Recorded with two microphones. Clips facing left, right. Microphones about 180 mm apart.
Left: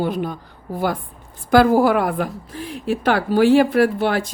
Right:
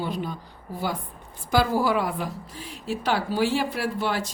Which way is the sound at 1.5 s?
55° left (ahead or behind).